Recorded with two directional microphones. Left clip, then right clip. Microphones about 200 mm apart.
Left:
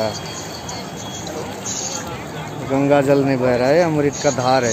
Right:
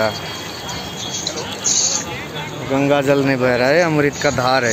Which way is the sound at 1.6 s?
55° left (ahead or behind).